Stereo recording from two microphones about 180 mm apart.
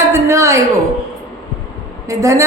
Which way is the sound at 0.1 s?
15° right (ahead or behind).